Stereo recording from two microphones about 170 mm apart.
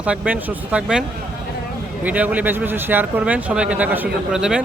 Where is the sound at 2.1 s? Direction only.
10° right (ahead or behind).